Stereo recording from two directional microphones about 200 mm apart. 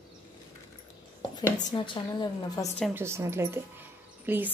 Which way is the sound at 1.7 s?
25° left (ahead or behind).